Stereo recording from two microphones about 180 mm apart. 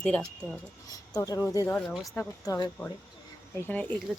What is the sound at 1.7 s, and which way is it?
Speech, centre (ahead or behind).